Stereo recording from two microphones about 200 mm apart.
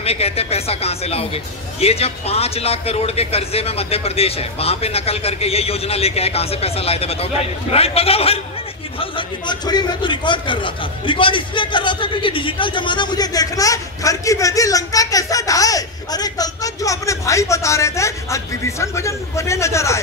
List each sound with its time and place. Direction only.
0.0 s a man's voice: 30° left (ahead or behind); by 20.0 s 15° left (ahead or behind)